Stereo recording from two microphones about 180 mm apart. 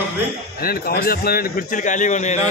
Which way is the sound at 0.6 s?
55° left (ahead or behind).